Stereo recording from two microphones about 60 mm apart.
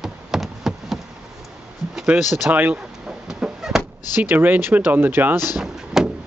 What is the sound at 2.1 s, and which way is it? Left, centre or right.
Speech, centre.